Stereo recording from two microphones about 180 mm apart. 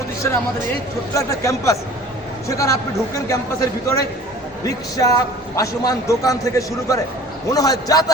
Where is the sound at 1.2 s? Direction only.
15° left (ahead or behind).